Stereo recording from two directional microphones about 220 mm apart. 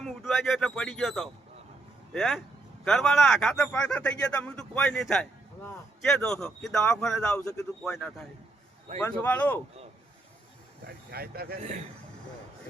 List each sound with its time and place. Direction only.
0.0 s speech: centre (ahead or behind)
7.9 s speech: centre (ahead or behind)
10.8 s speech: 45° right (ahead or behind)